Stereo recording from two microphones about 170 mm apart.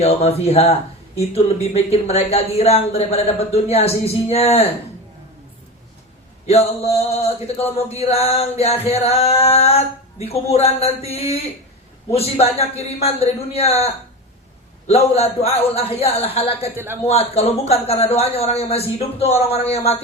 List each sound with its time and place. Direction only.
0.0 s speech: 35° left (ahead or behind)
6.5 s speech: 35° left (ahead or behind)
16.7 s a man's voice: 15° right (ahead or behind)
17.0 s speech: 40° left (ahead or behind)